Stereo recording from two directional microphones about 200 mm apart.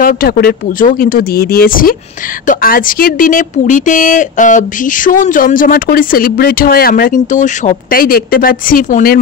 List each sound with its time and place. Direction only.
0.0 s a woman's voice: 45° left (ahead or behind)